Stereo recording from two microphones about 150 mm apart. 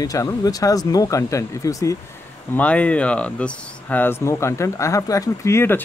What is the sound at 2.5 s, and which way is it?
Speech, 10° left (ahead or behind).